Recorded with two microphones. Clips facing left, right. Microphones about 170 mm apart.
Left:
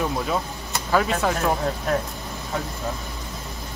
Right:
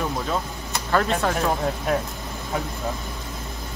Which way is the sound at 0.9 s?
5° left (ahead or behind).